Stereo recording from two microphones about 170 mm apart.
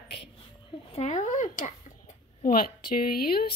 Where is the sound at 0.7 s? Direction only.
40° left (ahead or behind).